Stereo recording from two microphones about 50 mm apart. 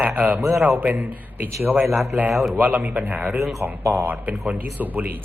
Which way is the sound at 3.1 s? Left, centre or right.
Right.